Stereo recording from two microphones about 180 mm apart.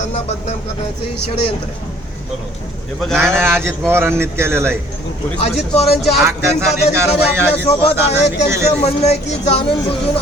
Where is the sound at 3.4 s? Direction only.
15° right (ahead or behind).